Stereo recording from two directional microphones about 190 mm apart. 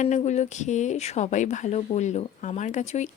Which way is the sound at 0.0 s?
40° left (ahead or behind).